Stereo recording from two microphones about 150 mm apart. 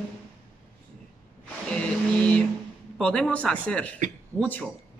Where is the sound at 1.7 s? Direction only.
5° left (ahead or behind).